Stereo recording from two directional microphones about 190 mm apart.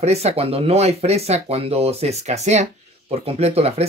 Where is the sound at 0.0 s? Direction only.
35° right (ahead or behind).